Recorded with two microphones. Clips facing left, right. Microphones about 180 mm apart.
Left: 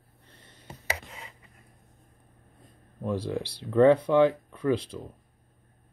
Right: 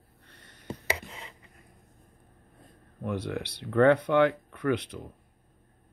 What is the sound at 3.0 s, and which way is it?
Speech, 25° left (ahead or behind).